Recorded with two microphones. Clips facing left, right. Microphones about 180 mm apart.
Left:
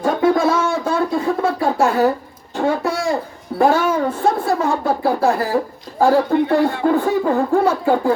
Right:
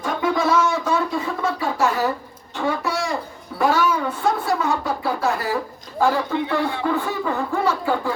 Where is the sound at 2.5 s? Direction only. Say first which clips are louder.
Left 4 dB; 50° left (ahead or behind).